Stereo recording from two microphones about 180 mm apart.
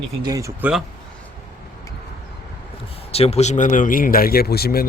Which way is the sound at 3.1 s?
35° left (ahead or behind).